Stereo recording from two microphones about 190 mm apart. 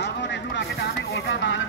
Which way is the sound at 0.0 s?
65° left (ahead or behind).